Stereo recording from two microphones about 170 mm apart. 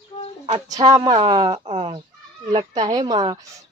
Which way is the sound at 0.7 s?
20° right (ahead or behind).